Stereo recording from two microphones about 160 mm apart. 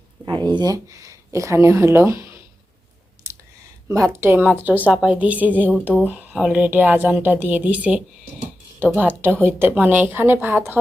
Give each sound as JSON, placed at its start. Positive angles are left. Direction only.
{"t": 0.3, "sound": "speech", "side_deg": -25}
{"t": 3.3, "sound": "a sound", "side_deg": -20}
{"t": 3.8, "sound": "speech", "side_deg": -15}